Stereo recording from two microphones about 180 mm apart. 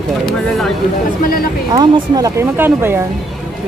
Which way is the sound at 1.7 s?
20° right (ahead or behind).